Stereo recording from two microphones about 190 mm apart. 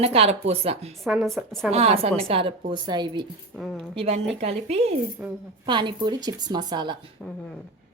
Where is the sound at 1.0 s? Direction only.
5° right (ahead or behind).